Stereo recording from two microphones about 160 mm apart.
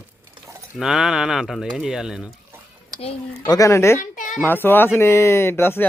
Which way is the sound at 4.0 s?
55° left (ahead or behind).